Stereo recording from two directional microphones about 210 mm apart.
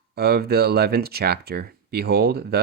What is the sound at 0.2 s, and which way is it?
Speech, 50° right (ahead or behind).